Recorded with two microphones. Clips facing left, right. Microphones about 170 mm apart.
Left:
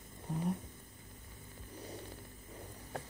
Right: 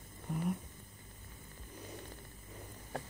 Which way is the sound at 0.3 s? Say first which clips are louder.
Even; 30° left (ahead or behind).